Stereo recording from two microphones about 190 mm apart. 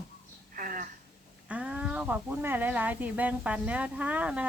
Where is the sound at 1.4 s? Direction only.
5° right (ahead or behind).